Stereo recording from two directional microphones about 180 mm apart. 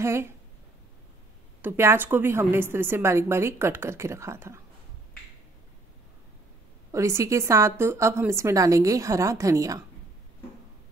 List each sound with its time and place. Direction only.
0.0 s a woman's voice: 15° right (ahead or behind)
1.6 s a woman's voice: 15° right (ahead or behind)
6.9 s a woman's voice: 15° right (ahead or behind)